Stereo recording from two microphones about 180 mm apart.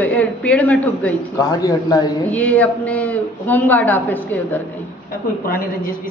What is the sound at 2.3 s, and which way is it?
A woman's voice, 10° left (ahead or behind).